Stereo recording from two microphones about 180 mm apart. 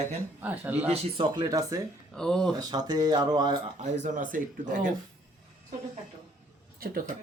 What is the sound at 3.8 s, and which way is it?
Speech, 45° right (ahead or behind).